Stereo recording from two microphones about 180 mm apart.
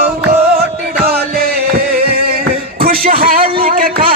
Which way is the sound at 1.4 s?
60° right (ahead or behind).